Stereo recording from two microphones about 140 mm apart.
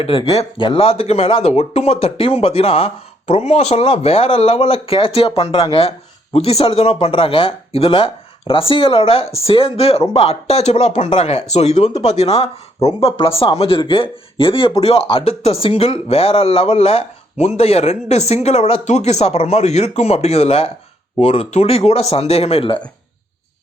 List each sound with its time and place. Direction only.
0.0 s speech: 40° left (ahead or behind)